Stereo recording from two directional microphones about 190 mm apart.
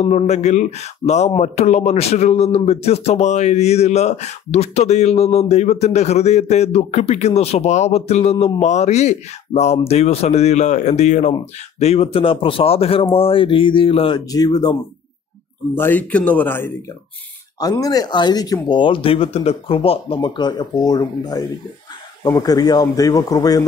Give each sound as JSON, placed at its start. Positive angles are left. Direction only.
{"t": 0.0, "sound": "speech", "side_deg": 35}
{"t": 15.7, "sound": "speech", "side_deg": 10}